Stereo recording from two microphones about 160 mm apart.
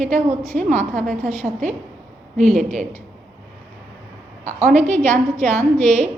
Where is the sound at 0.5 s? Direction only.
50° right (ahead or behind).